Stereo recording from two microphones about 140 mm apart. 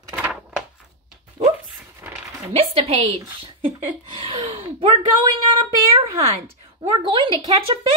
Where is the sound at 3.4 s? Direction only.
40° right (ahead or behind).